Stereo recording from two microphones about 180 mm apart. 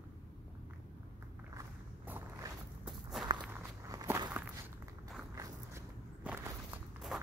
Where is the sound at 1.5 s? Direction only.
15° right (ahead or behind).